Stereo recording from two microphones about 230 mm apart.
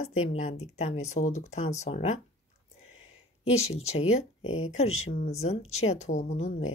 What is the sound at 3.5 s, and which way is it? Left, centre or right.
Speech, left.